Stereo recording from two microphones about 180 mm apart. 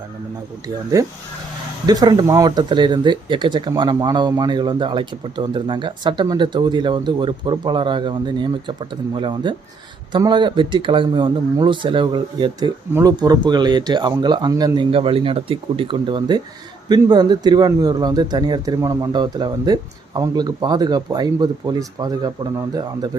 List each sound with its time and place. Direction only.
0.9 s speech: 20° right (ahead or behind)